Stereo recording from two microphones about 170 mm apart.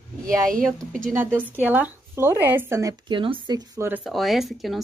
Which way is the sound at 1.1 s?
10° right (ahead or behind).